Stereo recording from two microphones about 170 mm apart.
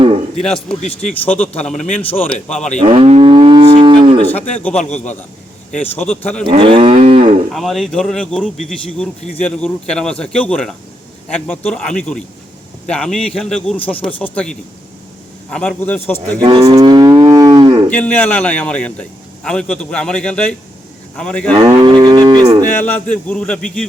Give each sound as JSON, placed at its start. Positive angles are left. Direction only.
{"t": 0.3, "sound": "a man's voice", "side_deg": 5}
{"t": 0.8, "sound": "speech", "side_deg": 45}
{"t": 1.2, "sound": "a man's voice", "side_deg": 10}
{"t": 2.8, "sound": "moo", "side_deg": -35}
{"t": 4.5, "sound": "a man's voice", "side_deg": 5}
{"t": 5.9, "sound": "a man's voice", "side_deg": 10}
{"t": 6.5, "sound": "moo", "side_deg": -30}
{"t": 7.5, "sound": "a man's voice", "side_deg": 0}
{"t": 16.4, "sound": "moo", "side_deg": -25}
{"t": 17.8, "sound": "a man's voice", "side_deg": 10}
{"t": 21.5, "sound": "moo", "side_deg": -25}
{"t": 22.8, "sound": "a man's voice", "side_deg": 10}